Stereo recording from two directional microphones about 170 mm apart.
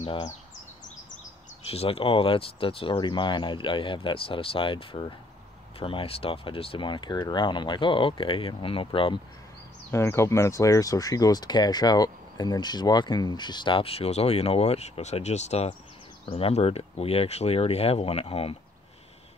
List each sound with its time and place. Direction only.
0.0 s speech: 30° left (ahead or behind)
1.7 s speech: 35° left (ahead or behind)
9.8 s speech: 15° left (ahead or behind); by 18.6 s 35° left (ahead or behind)